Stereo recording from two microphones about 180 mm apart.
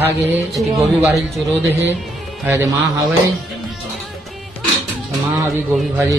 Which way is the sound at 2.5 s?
15° right (ahead or behind).